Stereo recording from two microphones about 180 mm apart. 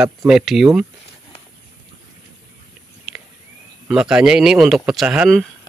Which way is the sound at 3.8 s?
5° right (ahead or behind).